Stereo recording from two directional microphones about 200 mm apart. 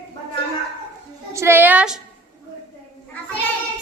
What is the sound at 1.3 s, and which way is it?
Speech, 10° right (ahead or behind).